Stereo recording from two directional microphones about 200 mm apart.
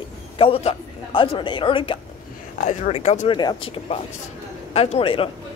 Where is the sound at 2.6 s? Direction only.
35° left (ahead or behind).